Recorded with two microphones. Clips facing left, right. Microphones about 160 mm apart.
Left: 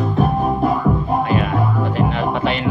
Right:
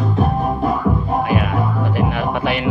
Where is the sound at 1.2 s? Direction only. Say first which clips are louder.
Even; 10° right (ahead or behind).